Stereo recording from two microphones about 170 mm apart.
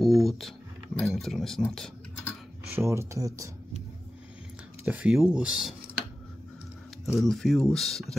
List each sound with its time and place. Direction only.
0.0 s speech: centre (ahead or behind)
2.7 s speech: 15° right (ahead or behind)
4.8 s speech: 5° right (ahead or behind)
7.2 s speech: centre (ahead or behind)